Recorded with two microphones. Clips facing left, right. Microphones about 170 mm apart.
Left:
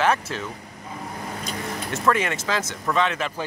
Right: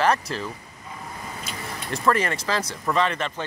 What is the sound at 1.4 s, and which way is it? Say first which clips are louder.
Speech: left 5 dB; centre (ahead or behind).